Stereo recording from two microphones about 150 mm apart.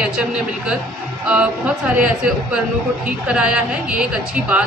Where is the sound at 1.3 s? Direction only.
10° right (ahead or behind).